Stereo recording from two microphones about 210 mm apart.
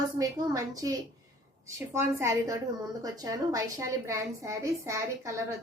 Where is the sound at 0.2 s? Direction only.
15° right (ahead or behind).